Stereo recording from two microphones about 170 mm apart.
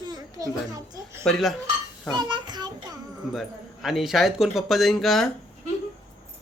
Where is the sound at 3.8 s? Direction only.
Centre (ahead or behind).